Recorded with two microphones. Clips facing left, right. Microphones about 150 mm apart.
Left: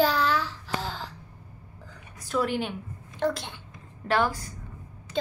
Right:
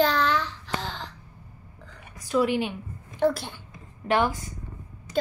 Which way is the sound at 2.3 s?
10° right (ahead or behind).